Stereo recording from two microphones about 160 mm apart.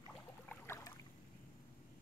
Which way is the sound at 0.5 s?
15° left (ahead or behind).